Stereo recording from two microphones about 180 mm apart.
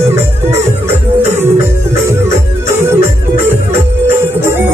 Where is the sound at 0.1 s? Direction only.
15° right (ahead or behind).